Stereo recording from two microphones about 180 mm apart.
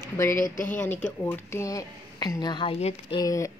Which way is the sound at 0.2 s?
15° left (ahead or behind).